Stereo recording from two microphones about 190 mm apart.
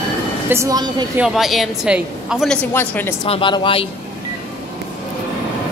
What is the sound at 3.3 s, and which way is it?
Speech, 25° left (ahead or behind).